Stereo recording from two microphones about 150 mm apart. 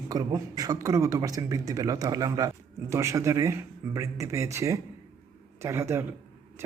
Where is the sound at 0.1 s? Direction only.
25° right (ahead or behind).